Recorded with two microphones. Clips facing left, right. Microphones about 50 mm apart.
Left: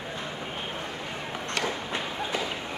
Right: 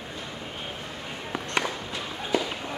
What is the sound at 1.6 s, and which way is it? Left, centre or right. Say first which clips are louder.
Run: right 2 dB; centre.